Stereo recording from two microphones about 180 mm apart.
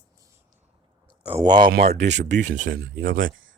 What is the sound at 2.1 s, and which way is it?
Speech, 85° right.